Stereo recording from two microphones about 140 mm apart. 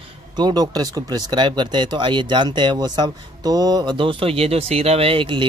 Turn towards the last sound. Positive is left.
turn(degrees=-40)  # may be behind; listen again after turning